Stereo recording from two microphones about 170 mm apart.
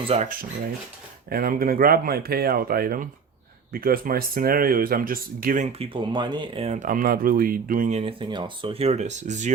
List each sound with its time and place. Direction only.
0.0 s speech: 35° right (ahead or behind)
1.3 s speech: 60° right (ahead or behind)
5.8 s speech: 30° right (ahead or behind); by 7.9 s 55° right (ahead or behind)
7.9 s speech: 30° right (ahead or behind)